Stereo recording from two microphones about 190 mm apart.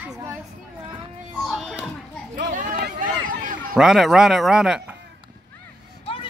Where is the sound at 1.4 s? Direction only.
Centre (ahead or behind).